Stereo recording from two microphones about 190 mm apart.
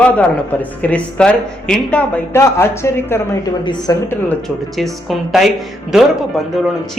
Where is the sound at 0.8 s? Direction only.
5° left (ahead or behind).